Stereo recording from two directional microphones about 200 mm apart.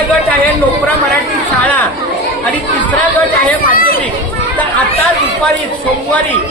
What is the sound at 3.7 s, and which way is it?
Chatter, 45° left (ahead or behind).